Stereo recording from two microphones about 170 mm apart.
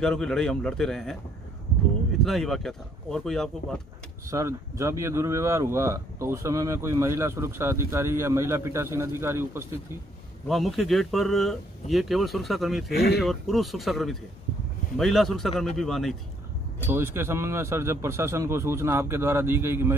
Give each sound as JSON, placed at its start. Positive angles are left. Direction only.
{"t": 0.0, "sound": "speech", "side_deg": 5}
{"t": 2.2, "sound": "speech", "side_deg": 0}
{"t": 4.3, "sound": "speech", "side_deg": -15}
{"t": 10.5, "sound": "speech", "side_deg": 0}
{"t": 12.9, "sound": "speech", "side_deg": 70}
{"t": 13.2, "sound": "speech", "side_deg": 0}
{"t": 16.8, "sound": "speech", "side_deg": -15}